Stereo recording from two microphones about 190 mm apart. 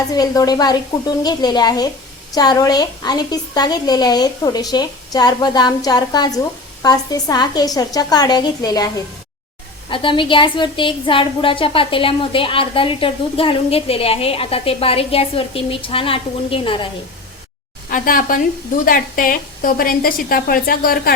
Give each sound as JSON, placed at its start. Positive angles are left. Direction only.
{"t": 0.1, "sound": "a woman's voice", "side_deg": 20}
{"t": 9.9, "sound": "a woman's voice", "side_deg": 25}
{"t": 17.9, "sound": "a woman's voice", "side_deg": 45}